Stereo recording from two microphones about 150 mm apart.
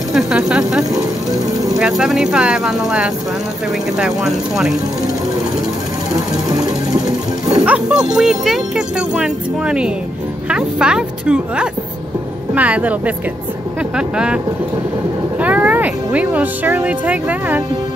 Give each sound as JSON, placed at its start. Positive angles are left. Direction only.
{"t": 0.1, "sound": "speech", "side_deg": -5}
{"t": 0.9, "sound": "music", "side_deg": -25}
{"t": 1.8, "sound": "speech", "side_deg": -5}
{"t": 4.0, "sound": "speech", "side_deg": 0}
{"t": 7.6, "sound": "speech", "side_deg": -5}
{"t": 15.4, "sound": "speech", "side_deg": -10}